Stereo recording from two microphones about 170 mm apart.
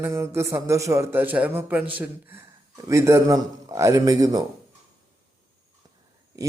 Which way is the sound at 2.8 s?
15° right (ahead or behind).